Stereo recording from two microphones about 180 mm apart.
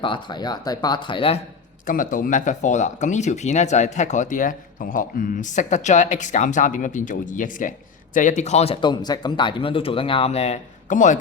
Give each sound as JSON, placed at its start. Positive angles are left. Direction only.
{"t": 0.0, "sound": "speech", "side_deg": 25}
{"t": 1.9, "sound": "speech", "side_deg": 50}